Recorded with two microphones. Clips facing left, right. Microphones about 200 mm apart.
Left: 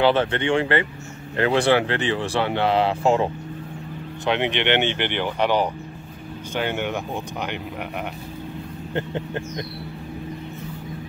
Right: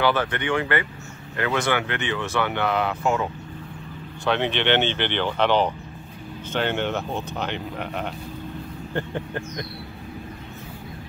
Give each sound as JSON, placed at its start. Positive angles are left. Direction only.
{"t": 0.0, "sound": "speech", "side_deg": 25}
{"t": 4.3, "sound": "speech", "side_deg": 15}